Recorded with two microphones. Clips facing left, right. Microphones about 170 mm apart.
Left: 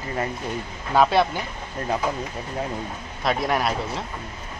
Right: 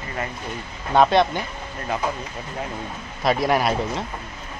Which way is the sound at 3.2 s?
Centre (ahead or behind).